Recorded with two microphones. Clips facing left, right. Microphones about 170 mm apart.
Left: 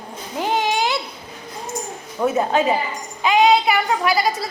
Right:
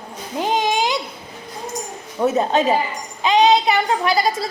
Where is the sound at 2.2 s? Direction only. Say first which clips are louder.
Right 1 dB; 20° right (ahead or behind).